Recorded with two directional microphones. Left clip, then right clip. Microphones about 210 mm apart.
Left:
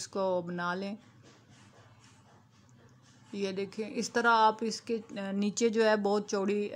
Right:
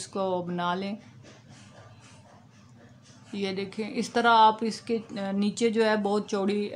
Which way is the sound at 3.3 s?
20° left (ahead or behind).